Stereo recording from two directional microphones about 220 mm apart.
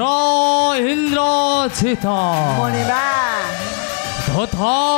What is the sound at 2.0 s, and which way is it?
A man's voice, 25° left (ahead or behind).